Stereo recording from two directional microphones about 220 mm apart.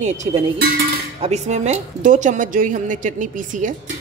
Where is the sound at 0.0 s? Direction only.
30° right (ahead or behind).